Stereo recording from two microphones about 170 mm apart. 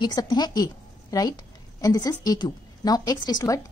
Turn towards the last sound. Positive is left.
turn(degrees=20)  # may be behind; listen again after turning